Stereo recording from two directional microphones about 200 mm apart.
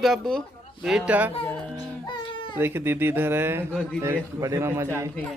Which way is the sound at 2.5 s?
10° right (ahead or behind).